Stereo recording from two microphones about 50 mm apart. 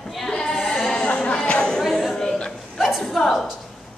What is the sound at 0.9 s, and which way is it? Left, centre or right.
Speech, centre.